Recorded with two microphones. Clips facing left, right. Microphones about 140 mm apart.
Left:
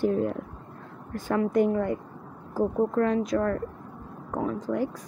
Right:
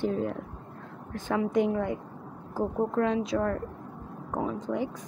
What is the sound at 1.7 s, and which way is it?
A woman's voice, 5° right (ahead or behind).